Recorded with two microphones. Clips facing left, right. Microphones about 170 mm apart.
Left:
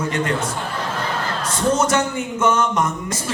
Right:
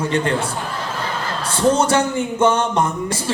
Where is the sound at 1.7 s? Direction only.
30° right (ahead or behind).